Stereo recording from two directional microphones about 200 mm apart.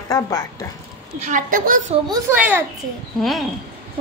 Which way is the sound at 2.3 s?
5° right (ahead or behind).